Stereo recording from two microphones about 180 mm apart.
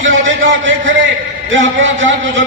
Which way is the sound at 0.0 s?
90° right.